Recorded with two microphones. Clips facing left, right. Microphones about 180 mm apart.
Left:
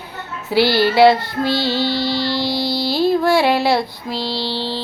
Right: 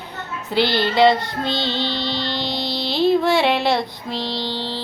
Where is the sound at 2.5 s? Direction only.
20° right (ahead or behind).